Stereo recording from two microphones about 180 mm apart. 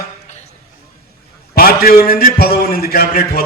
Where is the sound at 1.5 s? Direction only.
55° left (ahead or behind).